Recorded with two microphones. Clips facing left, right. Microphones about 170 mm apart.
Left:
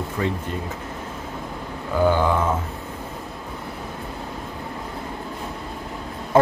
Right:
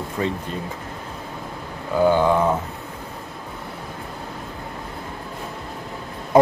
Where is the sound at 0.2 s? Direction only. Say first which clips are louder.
Right 1 dB; 25° right (ahead or behind).